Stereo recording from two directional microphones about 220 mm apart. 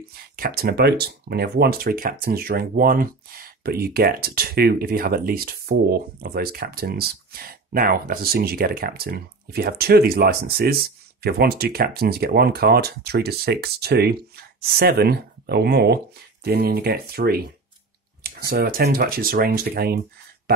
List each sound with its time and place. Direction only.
0.4 s speech: 45° right (ahead or behind)
18.5 s speech: 40° right (ahead or behind)